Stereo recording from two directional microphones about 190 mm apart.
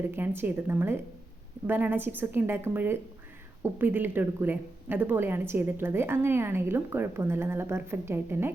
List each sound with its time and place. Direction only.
0.0 s a woman's voice: 10° right (ahead or behind)